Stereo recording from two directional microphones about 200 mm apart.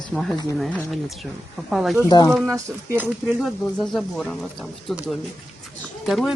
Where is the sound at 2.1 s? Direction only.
20° left (ahead or behind).